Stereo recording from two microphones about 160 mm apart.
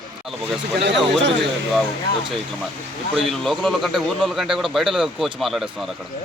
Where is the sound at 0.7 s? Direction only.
90° right.